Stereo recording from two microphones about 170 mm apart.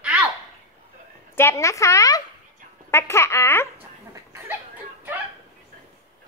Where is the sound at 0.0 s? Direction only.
5° right (ahead or behind).